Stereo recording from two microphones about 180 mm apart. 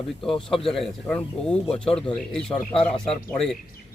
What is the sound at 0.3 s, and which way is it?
Speech, 30° left (ahead or behind).